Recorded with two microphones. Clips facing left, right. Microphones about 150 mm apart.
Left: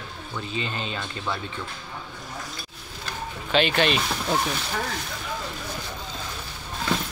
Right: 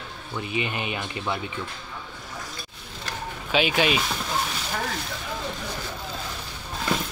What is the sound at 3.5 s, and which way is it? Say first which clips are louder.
Speech: left 1 dB; 10° right (ahead or behind).